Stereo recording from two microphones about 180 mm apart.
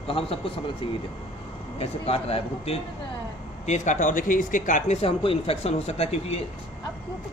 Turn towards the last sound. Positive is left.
turn(degrees=35)  # may be behind; listen again after turning